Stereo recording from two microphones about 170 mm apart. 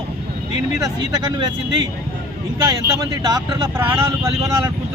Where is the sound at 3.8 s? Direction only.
10° right (ahead or behind).